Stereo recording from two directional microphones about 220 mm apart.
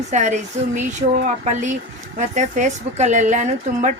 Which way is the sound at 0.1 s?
30° right (ahead or behind).